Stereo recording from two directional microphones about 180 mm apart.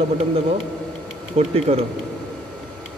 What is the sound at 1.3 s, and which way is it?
Speech, 35° right (ahead or behind).